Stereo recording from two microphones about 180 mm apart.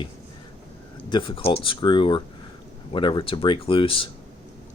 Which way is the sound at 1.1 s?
30° left (ahead or behind).